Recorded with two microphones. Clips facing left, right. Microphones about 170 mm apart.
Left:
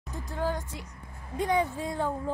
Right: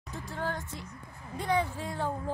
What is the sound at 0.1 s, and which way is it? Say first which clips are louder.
Speech: left 4 dB; 15° left (ahead or behind).